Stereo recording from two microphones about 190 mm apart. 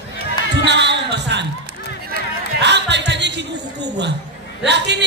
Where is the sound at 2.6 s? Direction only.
65° right (ahead or behind).